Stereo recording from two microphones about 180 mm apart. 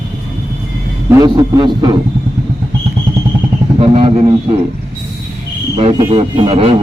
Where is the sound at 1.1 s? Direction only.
20° right (ahead or behind).